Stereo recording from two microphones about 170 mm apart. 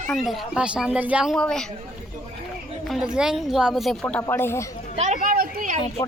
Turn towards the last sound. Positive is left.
turn(degrees=-55)  # may be behind; listen again after turning